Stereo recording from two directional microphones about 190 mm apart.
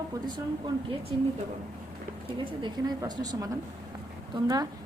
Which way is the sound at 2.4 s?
25° right (ahead or behind).